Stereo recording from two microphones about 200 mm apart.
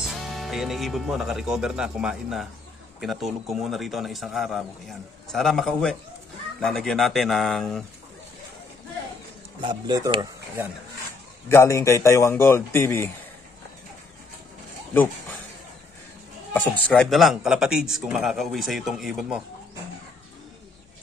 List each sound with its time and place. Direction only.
0.0 s a man's voice: centre (ahead or behind)
9.6 s speech: 25° right (ahead or behind)
11.4 s speech: 15° left (ahead or behind)
16.5 s a man's voice: 5° left (ahead or behind)